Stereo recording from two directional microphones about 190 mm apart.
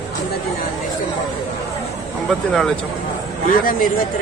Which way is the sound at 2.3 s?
Centre (ahead or behind).